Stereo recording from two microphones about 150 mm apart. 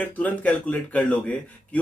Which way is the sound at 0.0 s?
10° left (ahead or behind).